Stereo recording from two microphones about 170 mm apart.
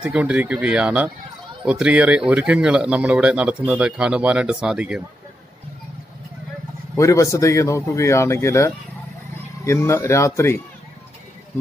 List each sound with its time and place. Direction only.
0.0 s speech: 5° right (ahead or behind)
7.0 s speech: 15° left (ahead or behind)